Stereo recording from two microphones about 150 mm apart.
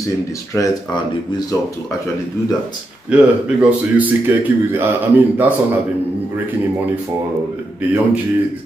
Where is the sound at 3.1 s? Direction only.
10° right (ahead or behind).